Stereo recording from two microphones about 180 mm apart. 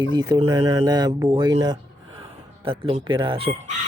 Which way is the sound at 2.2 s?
30° right (ahead or behind).